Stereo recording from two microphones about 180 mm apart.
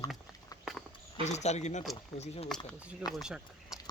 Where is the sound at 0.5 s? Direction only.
20° left (ahead or behind).